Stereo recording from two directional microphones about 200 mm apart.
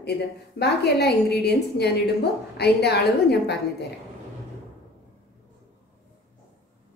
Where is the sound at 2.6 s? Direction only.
55° left (ahead or behind).